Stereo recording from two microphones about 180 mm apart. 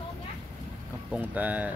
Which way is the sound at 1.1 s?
10° right (ahead or behind).